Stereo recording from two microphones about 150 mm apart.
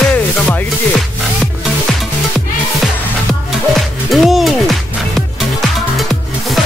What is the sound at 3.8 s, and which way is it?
Music, centre (ahead or behind).